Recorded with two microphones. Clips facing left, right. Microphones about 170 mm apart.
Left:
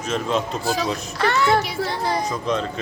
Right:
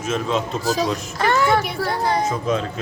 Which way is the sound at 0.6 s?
40° right (ahead or behind).